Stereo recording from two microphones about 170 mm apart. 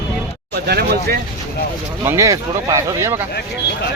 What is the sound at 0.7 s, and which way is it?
Speech, 65° right (ahead or behind).